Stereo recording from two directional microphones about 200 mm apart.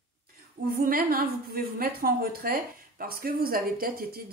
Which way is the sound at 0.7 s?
50° right (ahead or behind).